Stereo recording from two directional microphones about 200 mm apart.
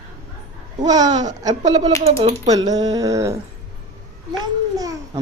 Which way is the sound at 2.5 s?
20° right (ahead or behind).